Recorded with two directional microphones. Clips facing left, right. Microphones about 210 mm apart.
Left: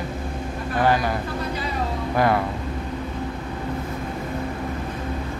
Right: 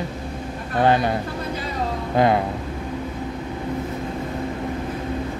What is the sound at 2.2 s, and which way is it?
Speech, 20° right (ahead or behind).